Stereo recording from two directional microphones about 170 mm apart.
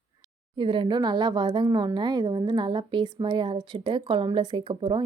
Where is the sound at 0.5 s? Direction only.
30° right (ahead or behind).